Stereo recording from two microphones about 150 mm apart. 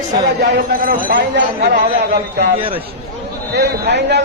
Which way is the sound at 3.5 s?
90° right.